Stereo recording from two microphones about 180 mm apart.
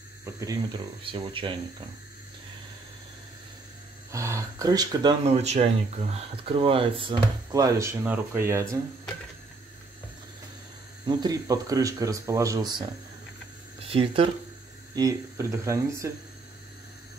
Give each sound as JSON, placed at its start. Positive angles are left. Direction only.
{"t": 0.2, "sound": "speech", "side_deg": -20}
{"t": 4.1, "sound": "speech", "side_deg": -15}
{"t": 5.2, "sound": "speech", "side_deg": -35}
{"t": 11.1, "sound": "speech", "side_deg": -20}
{"t": 15.0, "sound": "speech", "side_deg": -15}